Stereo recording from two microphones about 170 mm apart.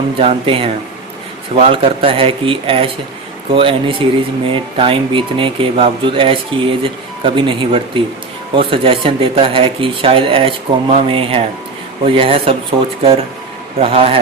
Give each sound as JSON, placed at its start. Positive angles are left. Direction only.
{"t": 0.2, "sound": "speech", "side_deg": -35}
{"t": 13.7, "sound": "speech", "side_deg": -35}